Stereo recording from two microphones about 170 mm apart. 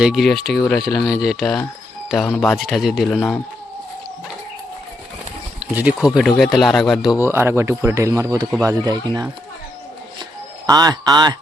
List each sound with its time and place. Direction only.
0.0 s speech: centre (ahead or behind)
3.2 s speech: 10° left (ahead or behind)
5.5 s speech: 5° right (ahead or behind)
7.2 s speech: 15° right (ahead or behind)
10.7 s speech: 20° right (ahead or behind)